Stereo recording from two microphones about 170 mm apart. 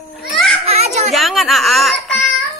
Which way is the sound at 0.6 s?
40° right (ahead or behind).